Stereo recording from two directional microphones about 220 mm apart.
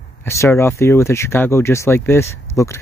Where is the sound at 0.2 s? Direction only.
10° left (ahead or behind).